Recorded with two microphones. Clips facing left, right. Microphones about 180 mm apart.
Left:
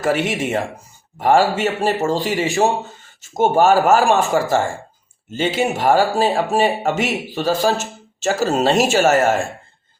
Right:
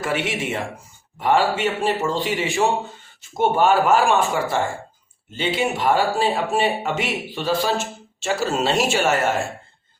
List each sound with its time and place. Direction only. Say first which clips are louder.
0.0 s speech: left 5 dB; 40° left (ahead or behind)